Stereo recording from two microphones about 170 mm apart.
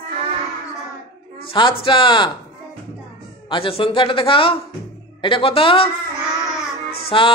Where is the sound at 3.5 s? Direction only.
30° left (ahead or behind).